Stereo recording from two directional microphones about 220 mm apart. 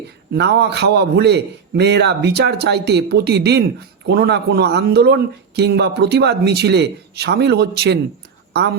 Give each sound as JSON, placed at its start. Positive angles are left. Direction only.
{"t": 0.3, "sound": "speech", "side_deg": -50}